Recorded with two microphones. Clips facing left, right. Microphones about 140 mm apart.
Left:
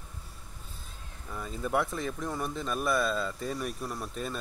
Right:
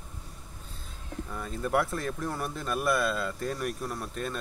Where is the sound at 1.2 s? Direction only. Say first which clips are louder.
Right 1 dB; 5° left (ahead or behind).